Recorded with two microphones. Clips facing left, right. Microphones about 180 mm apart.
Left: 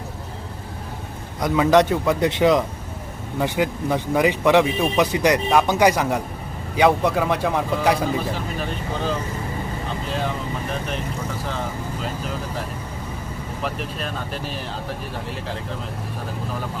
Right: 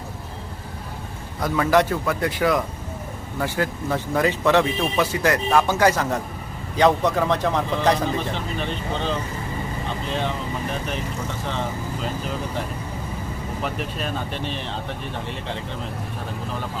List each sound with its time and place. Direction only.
1.4 s a man's voice: 15° left (ahead or behind); by 11.0 s centre (ahead or behind)
12.0 s speech: centre (ahead or behind)